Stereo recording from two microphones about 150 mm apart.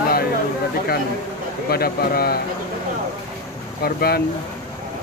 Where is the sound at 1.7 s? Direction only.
90° left.